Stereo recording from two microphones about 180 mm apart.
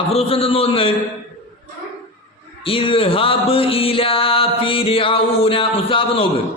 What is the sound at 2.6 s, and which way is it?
Music, 30° left (ahead or behind).